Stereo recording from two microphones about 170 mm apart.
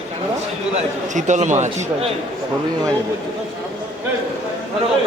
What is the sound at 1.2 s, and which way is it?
Speech, 45° right (ahead or behind).